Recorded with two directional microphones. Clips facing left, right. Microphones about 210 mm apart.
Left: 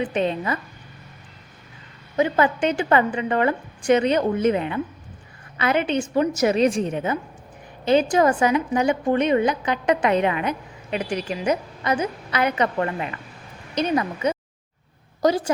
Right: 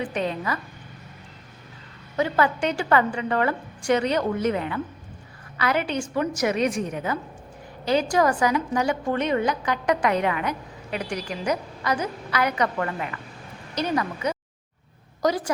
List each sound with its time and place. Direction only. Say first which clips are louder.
0.0 s a woman's voice: left 4 dB; 20° left (ahead or behind)
2.1 s a woman's voice: left 3 dB; 20° left (ahead or behind)